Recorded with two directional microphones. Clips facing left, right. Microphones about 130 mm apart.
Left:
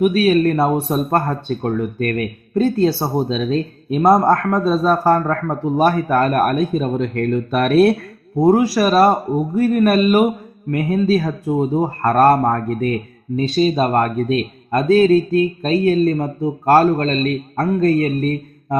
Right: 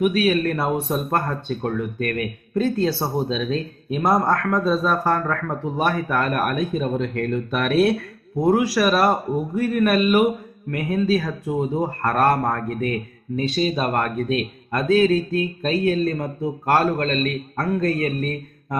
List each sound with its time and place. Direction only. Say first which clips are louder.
0.0 s speech: left 5 dB; 35° left (ahead or behind)
8.4 s speech: left 5 dB; 30° left (ahead or behind)